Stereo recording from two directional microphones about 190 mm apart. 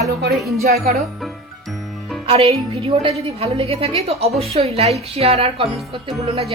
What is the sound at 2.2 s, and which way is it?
A woman's voice, 30° right (ahead or behind).